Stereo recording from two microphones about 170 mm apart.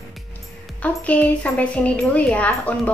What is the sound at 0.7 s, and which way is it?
A woman's voice, 10° left (ahead or behind).